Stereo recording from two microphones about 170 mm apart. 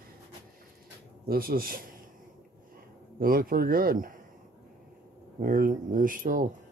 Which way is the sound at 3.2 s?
60° right (ahead or behind).